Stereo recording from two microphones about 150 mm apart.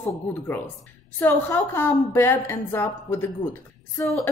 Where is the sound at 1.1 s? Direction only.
15° left (ahead or behind).